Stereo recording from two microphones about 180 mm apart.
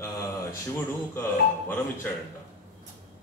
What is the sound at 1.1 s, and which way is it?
Speech, 10° left (ahead or behind).